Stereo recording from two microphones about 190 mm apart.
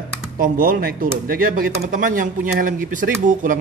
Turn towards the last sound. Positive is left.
turn(degrees=-45)  # may be behind; listen again after turning